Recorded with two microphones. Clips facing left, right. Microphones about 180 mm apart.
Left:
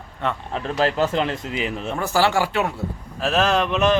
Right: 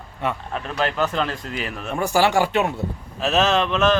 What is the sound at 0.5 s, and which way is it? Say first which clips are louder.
Speech: left 5 dB; 30° left (ahead or behind).